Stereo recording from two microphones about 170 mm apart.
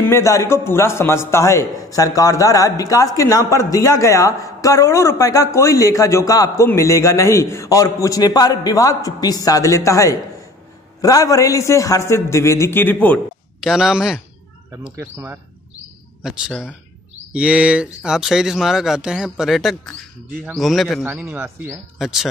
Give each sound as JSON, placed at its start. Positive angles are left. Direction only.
{"t": 0.1, "sound": "a man's voice", "side_deg": 15}
{"t": 13.7, "sound": "a man's voice", "side_deg": -5}